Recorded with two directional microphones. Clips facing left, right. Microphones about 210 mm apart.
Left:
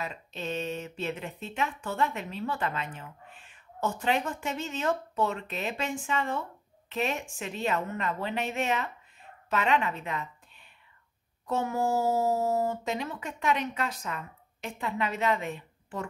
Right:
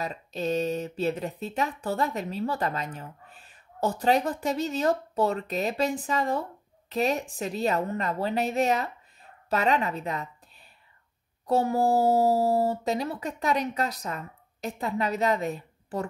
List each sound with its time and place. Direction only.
0.0 s a woman's voice: 40° right (ahead or behind)